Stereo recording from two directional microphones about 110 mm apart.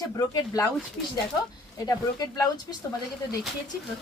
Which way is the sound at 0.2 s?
30° left (ahead or behind).